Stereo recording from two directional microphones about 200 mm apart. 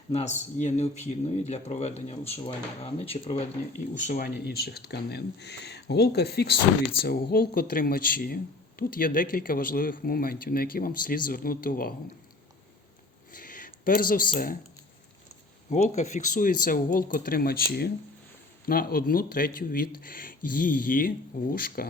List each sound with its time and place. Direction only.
0.1 s speech: 35° left (ahead or behind)
4.0 s speech: 45° left (ahead or behind)
13.3 s a sound: 45° left (ahead or behind)
15.7 s speech: 35° left (ahead or behind)